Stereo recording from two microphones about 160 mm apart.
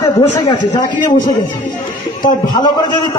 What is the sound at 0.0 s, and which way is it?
Speech, 20° left (ahead or behind).